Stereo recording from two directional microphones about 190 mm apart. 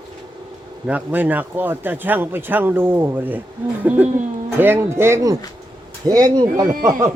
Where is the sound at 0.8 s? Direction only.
10° right (ahead or behind).